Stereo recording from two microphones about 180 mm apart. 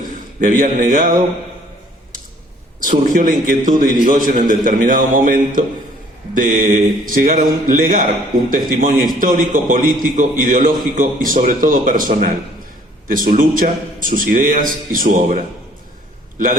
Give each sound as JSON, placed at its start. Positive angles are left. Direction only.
{"t": 0.4, "sound": "a man's voice", "side_deg": -50}
{"t": 2.8, "sound": "a man's voice", "side_deg": -45}